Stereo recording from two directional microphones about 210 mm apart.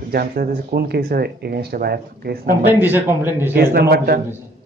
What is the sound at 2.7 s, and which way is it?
Speech, 10° right (ahead or behind).